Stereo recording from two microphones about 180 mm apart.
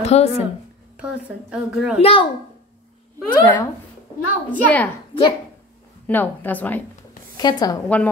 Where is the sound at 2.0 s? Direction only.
30° left (ahead or behind).